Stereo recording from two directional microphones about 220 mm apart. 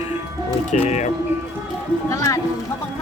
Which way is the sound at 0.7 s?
30° left (ahead or behind).